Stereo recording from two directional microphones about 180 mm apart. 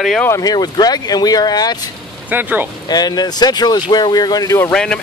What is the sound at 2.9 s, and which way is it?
Speech, 20° left (ahead or behind).